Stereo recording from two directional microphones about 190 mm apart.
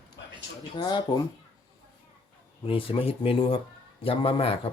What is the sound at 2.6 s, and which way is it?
Speech, 30° left (ahead or behind).